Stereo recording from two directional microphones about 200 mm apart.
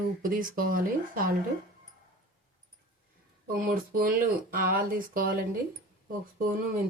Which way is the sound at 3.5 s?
45° right (ahead or behind).